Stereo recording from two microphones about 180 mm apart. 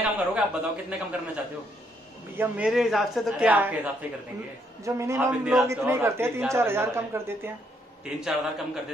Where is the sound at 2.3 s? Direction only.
10° right (ahead or behind).